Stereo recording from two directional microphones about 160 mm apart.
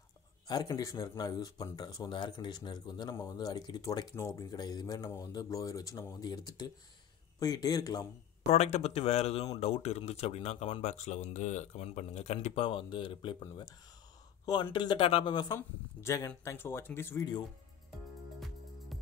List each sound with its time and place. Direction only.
0.5 s speech: 25° left (ahead or behind)
8.5 s speech: 45° left (ahead or behind); by 15.5 s 30° left (ahead or behind)
15.5 s speech: 15° left (ahead or behind)